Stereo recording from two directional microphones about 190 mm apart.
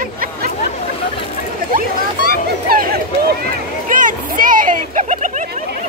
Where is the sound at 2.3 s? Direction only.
55° right (ahead or behind).